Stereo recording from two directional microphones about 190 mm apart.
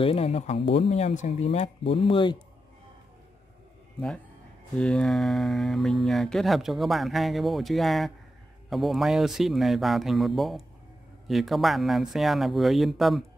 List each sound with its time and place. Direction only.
0.0 s speech: 30° left (ahead or behind)
4.7 s speech: 5° left (ahead or behind)